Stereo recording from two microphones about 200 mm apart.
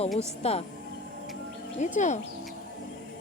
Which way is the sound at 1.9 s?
35° left (ahead or behind).